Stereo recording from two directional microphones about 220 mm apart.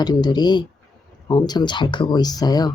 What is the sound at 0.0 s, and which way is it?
Speech, 20° left (ahead or behind).